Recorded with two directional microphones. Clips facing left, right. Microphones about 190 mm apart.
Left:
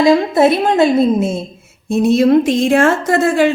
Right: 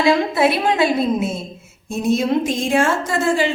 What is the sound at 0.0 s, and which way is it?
A woman's voice, 40° left (ahead or behind).